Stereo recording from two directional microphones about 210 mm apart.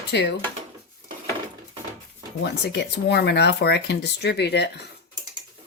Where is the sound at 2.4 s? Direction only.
50° left (ahead or behind).